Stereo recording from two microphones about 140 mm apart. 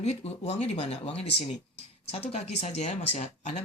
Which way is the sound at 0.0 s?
50° left (ahead or behind).